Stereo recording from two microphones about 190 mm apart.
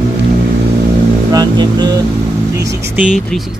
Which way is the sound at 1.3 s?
20° right (ahead or behind).